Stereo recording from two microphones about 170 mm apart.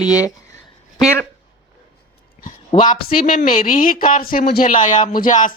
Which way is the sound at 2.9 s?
60° left (ahead or behind).